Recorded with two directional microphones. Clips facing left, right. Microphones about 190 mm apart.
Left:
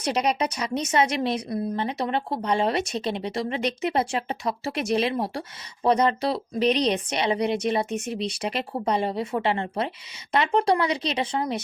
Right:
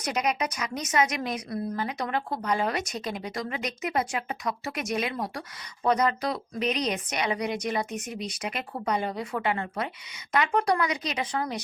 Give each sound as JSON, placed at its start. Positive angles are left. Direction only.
{"t": 0.0, "sound": "a woman's voice", "side_deg": 30}